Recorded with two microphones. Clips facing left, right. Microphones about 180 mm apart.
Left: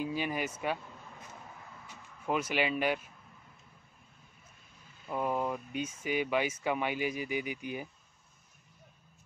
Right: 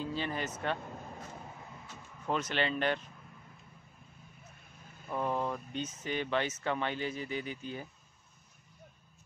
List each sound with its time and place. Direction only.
0.0 s speech: 10° left (ahead or behind)
0.8 s a sound: 45° right (ahead or behind)
1.9 s speech: 10° left (ahead or behind)
5.0 s speech: 10° left (ahead or behind)